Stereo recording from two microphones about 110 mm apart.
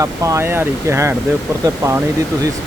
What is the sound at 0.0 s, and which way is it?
Speech, 30° right (ahead or behind).